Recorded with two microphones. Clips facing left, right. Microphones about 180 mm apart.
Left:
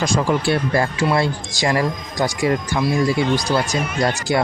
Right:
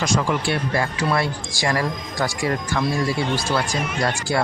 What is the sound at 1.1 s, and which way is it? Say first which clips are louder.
Speech: left 3 dB; 25° left (ahead or behind).